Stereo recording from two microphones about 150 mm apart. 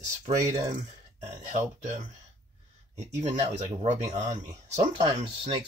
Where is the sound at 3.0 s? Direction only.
50° right (ahead or behind).